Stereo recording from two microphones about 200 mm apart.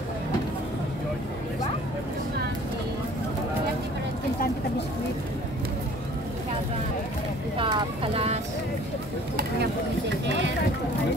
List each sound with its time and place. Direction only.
7.5 s clip-clop: 25° right (ahead or behind)